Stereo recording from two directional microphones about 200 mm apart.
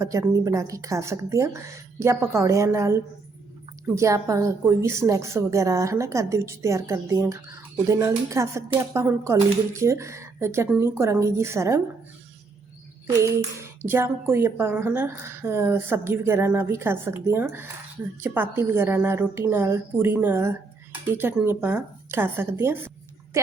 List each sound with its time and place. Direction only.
0.0 s a woman's voice: 15° right (ahead or behind)
13.1 s a woman's voice: 15° right (ahead or behind)